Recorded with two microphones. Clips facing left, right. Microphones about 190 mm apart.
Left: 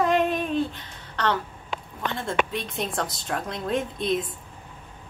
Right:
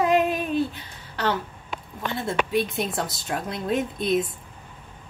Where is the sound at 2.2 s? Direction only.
5° right (ahead or behind).